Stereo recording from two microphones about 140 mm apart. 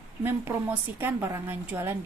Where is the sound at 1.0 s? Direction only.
15° right (ahead or behind).